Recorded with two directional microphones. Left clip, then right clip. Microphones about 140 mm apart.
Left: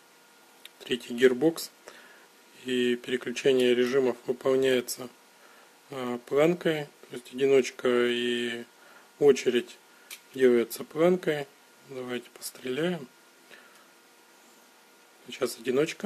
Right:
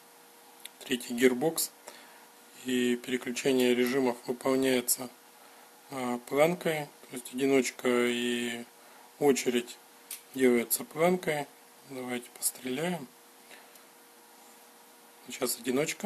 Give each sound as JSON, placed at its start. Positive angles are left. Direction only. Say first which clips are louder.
{"t": 0.7, "sound": "speech", "louder": "left 3 dB", "side_deg": 45}
{"t": 15.2, "sound": "speech", "louder": "left 3 dB", "side_deg": 45}